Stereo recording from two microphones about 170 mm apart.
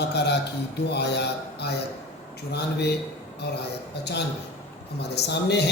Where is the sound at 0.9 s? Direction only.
80° left.